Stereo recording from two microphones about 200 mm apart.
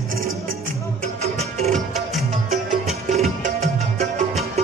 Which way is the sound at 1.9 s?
Centre (ahead or behind).